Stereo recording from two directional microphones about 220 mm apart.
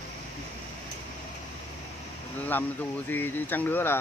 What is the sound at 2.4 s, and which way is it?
Speech, 10° left (ahead or behind).